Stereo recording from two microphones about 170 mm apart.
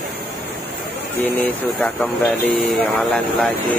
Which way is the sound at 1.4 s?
10° left (ahead or behind).